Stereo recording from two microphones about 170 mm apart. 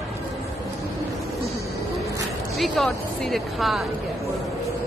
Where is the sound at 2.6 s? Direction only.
Centre (ahead or behind).